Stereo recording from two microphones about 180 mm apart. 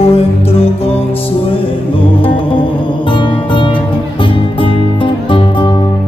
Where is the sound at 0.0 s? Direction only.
35° left (ahead or behind).